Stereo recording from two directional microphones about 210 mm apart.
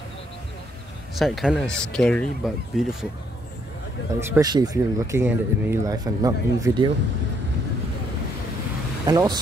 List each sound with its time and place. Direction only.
1.1 s speech: centre (ahead or behind)
4.2 s speech: 15° right (ahead or behind)
9.0 s speech: 15° right (ahead or behind)